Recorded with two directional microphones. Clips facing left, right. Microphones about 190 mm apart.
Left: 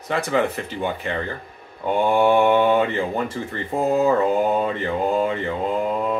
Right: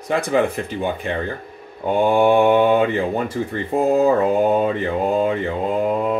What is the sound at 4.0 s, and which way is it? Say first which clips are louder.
Mantra: right 2 dB; 15° right (ahead or behind).